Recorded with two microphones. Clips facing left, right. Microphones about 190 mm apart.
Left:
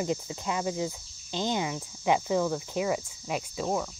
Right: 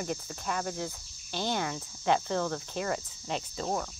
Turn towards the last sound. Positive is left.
turn(degrees=5)  # may be behind; listen again after turning